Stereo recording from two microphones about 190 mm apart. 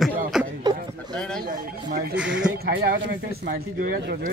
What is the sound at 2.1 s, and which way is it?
Speech, 5° right (ahead or behind).